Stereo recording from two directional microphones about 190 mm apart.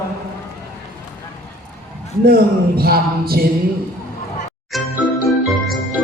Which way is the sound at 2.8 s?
55° right (ahead or behind).